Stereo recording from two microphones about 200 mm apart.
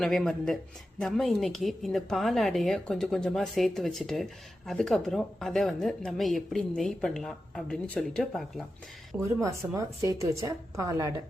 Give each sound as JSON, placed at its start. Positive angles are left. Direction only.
{"t": 0.0, "sound": "a woman's voice", "side_deg": 0}
{"t": 9.4, "sound": "a woman's voice", "side_deg": -15}